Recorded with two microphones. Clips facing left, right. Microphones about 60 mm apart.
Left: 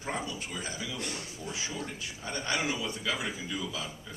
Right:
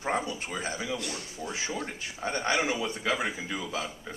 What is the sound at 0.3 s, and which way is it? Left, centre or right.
Speech, right.